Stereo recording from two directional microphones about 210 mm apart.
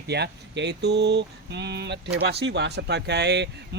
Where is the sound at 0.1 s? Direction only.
55° right (ahead or behind).